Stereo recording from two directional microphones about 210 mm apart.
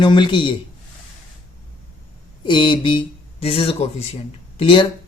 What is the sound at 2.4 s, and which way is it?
Speech, 20° left (ahead or behind).